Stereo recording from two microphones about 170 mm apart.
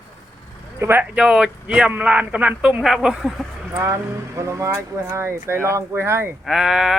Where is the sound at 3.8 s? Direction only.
15° right (ahead or behind).